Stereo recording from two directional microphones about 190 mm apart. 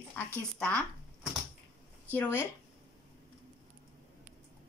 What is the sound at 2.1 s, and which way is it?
Speech, 10° left (ahead or behind).